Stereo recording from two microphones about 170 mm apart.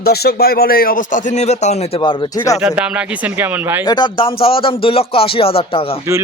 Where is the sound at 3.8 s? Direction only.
25° left (ahead or behind).